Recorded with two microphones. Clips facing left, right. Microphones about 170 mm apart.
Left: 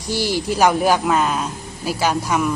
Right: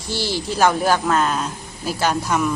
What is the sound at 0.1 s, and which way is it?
A woman's voice, 15° left (ahead or behind).